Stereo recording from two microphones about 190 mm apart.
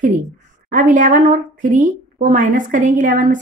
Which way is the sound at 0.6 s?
45° right (ahead or behind).